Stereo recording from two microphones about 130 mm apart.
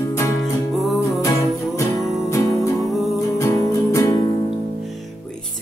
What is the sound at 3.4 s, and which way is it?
Music, 20° left (ahead or behind).